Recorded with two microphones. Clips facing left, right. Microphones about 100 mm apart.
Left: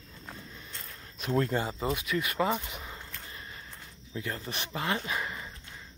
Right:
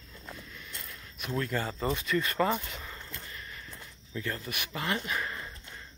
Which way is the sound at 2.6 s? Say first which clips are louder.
Even; 15° left (ahead or behind).